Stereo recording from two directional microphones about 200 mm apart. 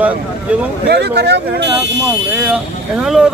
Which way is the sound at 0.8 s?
55° right (ahead or behind).